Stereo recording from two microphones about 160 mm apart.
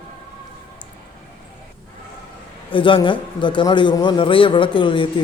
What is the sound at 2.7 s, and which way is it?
A man's voice, 30° left (ahead or behind).